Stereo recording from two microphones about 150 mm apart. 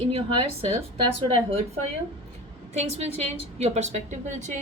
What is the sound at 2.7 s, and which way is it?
A woman's voice, 45° right (ahead or behind).